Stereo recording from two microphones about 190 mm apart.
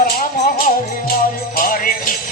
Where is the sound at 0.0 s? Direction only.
50° left (ahead or behind).